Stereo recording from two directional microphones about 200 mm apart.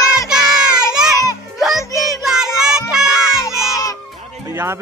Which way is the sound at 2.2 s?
5° right (ahead or behind).